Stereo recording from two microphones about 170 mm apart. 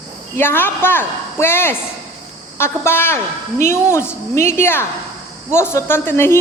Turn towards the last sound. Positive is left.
turn(degrees=15)  # may be behind; listen again after turning